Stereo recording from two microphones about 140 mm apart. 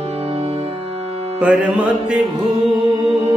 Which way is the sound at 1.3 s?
10° right (ahead or behind).